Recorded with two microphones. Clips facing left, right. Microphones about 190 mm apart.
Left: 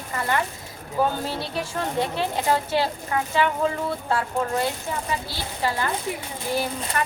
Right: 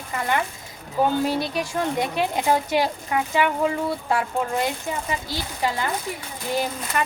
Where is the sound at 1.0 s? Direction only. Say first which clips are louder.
Right 3 dB; 15° right (ahead or behind).